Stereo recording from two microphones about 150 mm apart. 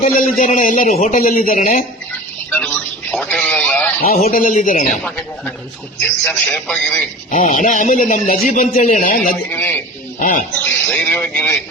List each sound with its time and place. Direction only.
0.0 s a man's voice: 60° left (ahead or behind)
2.5 s radio: 10° left (ahead or behind)
4.3 s a man's voice: 70° left (ahead or behind)
4.5 s a man's voice: 55° left (ahead or behind)
4.9 s speech: 10° left (ahead or behind)
7.3 s a man's voice: 55° left (ahead or behind)
9.5 s speech: 15° left (ahead or behind)
10.2 s a man's voice: 60° left (ahead or behind)
10.5 s speech: 10° left (ahead or behind)